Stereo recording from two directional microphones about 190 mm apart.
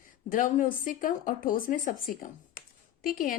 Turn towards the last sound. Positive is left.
turn(degrees=45)  # may be behind; listen again after turning